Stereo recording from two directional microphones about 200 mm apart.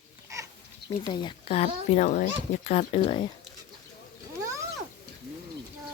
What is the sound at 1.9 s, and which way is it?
Speech, 40° left (ahead or behind).